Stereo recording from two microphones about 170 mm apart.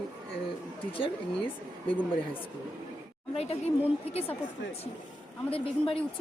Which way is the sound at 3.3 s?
35° left (ahead or behind).